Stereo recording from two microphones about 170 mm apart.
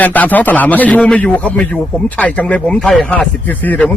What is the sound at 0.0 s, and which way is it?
Speech, 10° left (ahead or behind).